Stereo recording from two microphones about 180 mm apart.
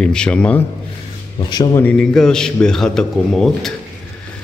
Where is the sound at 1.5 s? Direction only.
20° left (ahead or behind).